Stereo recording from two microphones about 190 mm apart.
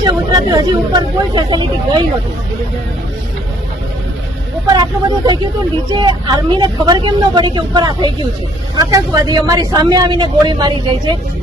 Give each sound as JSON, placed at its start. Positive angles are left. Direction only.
{"t": 0.0, "sound": "speech", "side_deg": -20}
{"t": 4.7, "sound": "speech", "side_deg": -20}